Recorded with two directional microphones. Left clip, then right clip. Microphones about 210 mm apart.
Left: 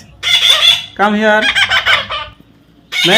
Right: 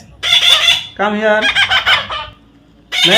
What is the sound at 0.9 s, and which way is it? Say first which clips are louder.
Fowl: left 2 dB; 35° left (ahead or behind).